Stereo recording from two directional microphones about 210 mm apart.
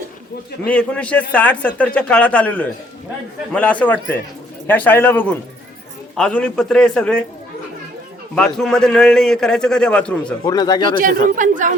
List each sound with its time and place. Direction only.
0.6 s a man's voice: 5° left (ahead or behind)
8.4 s a man's voice: 5° left (ahead or behind)
10.4 s speech: 20° left (ahead or behind)
10.9 s speech: 40° right (ahead or behind)